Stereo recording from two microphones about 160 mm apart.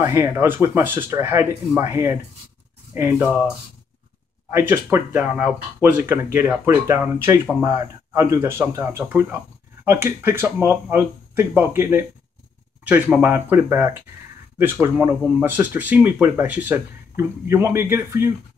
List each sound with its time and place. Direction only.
0.0 s speech: 15° right (ahead or behind)
4.5 s speech: 15° right (ahead or behind)